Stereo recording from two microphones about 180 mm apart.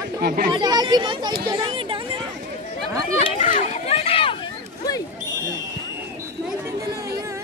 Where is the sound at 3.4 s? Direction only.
40° left (ahead or behind).